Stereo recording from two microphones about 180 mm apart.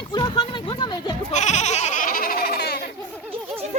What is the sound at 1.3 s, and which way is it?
Goat, 40° left (ahead or behind).